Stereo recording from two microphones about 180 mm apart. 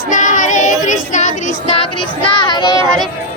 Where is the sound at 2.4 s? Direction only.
25° left (ahead or behind).